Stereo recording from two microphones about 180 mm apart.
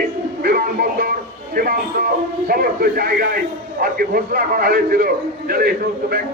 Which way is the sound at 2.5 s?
55° right (ahead or behind).